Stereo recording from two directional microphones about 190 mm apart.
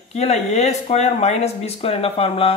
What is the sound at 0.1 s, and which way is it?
Speech, 35° left (ahead or behind).